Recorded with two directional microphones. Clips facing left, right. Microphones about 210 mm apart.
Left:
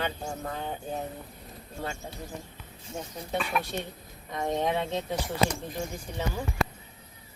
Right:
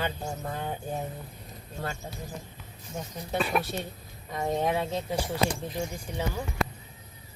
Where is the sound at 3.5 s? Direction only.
35° right (ahead or behind).